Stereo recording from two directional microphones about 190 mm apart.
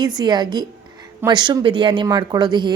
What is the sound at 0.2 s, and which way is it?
Speech, 20° right (ahead or behind).